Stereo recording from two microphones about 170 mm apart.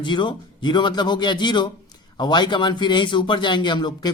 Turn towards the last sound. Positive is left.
turn(degrees=25)  # may be behind; listen again after turning